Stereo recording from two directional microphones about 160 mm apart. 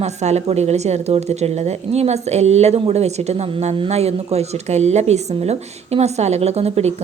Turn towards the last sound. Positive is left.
turn(degrees=-40)  # may be behind; listen again after turning